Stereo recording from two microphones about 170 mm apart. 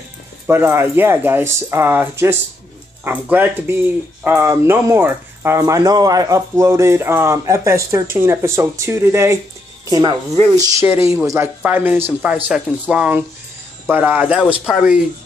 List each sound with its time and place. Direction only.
0.5 s speech: 15° right (ahead or behind)